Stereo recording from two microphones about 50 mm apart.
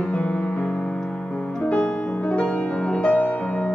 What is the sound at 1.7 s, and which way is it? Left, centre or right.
Music, left.